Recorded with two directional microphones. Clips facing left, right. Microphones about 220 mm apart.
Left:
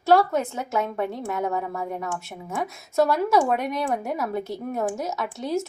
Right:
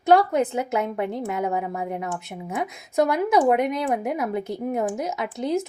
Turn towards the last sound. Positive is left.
turn(degrees=-20)  # may be behind; listen again after turning